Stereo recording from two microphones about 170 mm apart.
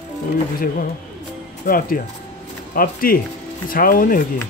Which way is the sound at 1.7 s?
55° left (ahead or behind).